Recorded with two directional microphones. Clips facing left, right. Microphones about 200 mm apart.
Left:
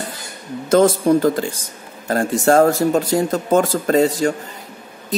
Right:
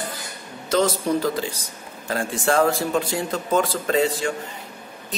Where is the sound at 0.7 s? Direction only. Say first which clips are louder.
Left 7 dB; 50° left (ahead or behind).